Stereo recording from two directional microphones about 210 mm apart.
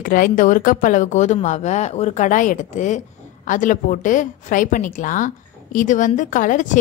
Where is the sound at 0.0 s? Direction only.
40° left (ahead or behind).